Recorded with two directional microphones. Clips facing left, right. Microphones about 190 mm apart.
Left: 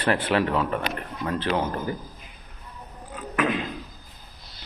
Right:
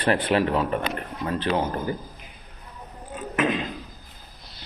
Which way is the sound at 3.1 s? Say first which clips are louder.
Right 1 dB; 20° right (ahead or behind).